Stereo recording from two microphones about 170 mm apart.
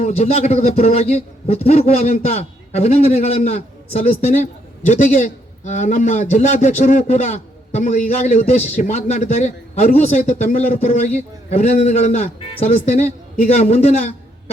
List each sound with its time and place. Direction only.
0.0 s a man's voice: 40° left (ahead or behind)